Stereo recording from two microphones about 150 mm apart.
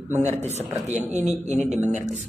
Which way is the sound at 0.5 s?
50° right (ahead or behind).